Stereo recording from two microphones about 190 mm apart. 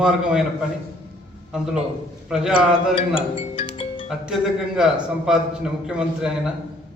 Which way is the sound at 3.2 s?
30° left (ahead or behind).